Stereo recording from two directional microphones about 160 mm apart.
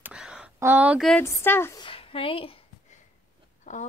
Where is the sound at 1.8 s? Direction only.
35° left (ahead or behind).